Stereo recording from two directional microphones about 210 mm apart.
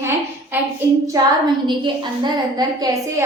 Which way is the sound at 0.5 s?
10° right (ahead or behind).